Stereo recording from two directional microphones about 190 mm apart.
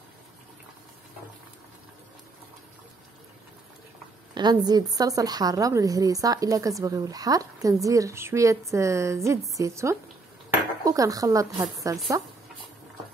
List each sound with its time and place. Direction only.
4.3 s a woman's voice: 20° right (ahead or behind)